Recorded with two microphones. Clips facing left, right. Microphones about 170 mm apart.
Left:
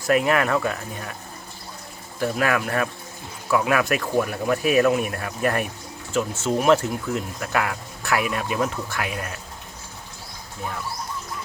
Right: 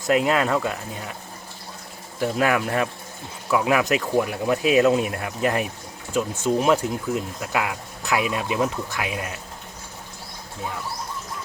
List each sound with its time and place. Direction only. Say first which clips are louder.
0.0 s speech: even; 20° right (ahead or behind)
2.2 s speech: right 1 dB; 20° right (ahead or behind)